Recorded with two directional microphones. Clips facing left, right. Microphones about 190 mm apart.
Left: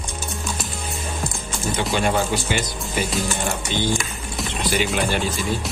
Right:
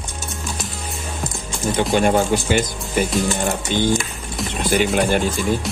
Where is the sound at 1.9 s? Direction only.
50° right (ahead or behind).